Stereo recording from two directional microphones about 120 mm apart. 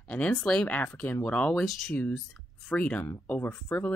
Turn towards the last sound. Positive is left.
turn(degrees=15)  # may be behind; listen again after turning